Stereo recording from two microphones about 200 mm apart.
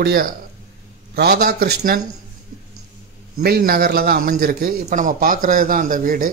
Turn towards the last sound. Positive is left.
turn(degrees=-40)  # may be behind; listen again after turning